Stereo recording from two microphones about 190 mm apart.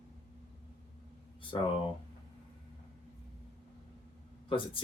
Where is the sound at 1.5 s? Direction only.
25° left (ahead or behind).